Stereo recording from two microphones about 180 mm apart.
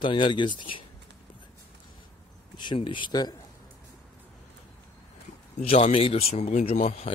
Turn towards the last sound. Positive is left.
turn(degrees=35)  # may be behind; listen again after turning